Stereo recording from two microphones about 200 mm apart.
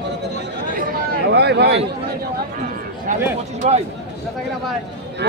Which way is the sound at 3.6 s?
35° right (ahead or behind).